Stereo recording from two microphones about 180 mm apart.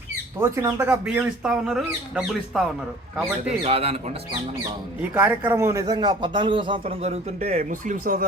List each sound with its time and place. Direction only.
0.3 s speech: 15° right (ahead or behind)
3.6 s speech: 35° right (ahead or behind)
5.1 s speech: 10° right (ahead or behind); by 8.3 s 50° right (ahead or behind)